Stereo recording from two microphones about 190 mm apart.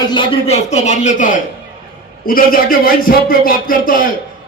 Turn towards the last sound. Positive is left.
turn(degrees=45)  # may be behind; listen again after turning